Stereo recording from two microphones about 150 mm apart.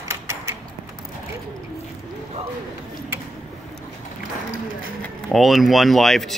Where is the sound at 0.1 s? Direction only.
20° right (ahead or behind).